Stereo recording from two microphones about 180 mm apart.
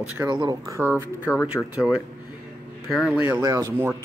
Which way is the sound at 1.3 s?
15° left (ahead or behind).